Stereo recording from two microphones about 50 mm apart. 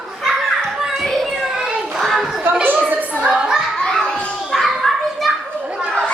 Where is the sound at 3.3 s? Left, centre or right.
Centre.